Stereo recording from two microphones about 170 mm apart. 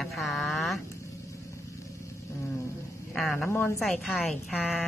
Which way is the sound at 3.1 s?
Centre (ahead or behind).